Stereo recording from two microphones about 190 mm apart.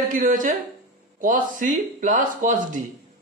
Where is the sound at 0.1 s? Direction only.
45° right (ahead or behind).